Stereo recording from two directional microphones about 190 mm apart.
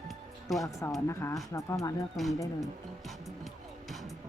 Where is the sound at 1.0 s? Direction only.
15° left (ahead or behind).